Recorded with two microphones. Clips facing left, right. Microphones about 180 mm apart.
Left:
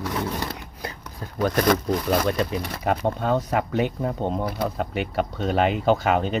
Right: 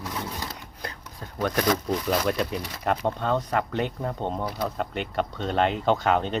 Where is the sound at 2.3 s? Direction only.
Centre (ahead or behind).